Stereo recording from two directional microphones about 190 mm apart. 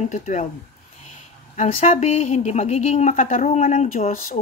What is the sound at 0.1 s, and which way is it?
Speech, 40° left (ahead or behind).